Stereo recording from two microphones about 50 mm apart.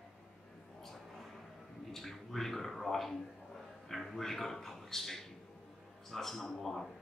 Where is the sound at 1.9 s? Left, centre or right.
Centre.